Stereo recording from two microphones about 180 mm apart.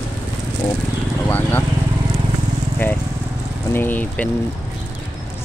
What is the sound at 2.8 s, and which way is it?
Vehicle, 10° left (ahead or behind).